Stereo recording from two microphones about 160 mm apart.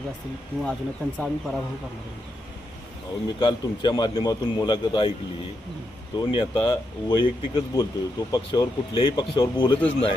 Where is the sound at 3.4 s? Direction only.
30° left (ahead or behind).